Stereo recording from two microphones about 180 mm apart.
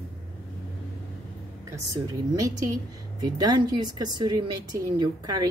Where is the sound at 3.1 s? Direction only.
20° right (ahead or behind).